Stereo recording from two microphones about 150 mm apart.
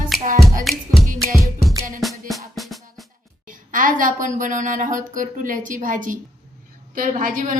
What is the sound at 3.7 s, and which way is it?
A woman's voice, 65° right (ahead or behind).